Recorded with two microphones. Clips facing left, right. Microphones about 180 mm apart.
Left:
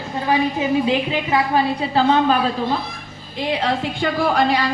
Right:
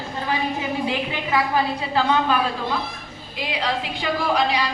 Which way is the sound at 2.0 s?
30° left (ahead or behind).